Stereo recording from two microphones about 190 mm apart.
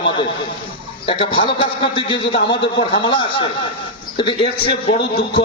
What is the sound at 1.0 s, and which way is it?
A man's voice, 30° left (ahead or behind).